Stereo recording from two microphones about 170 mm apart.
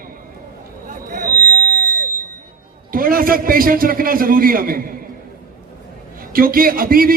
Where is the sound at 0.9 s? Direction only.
50° right (ahead or behind).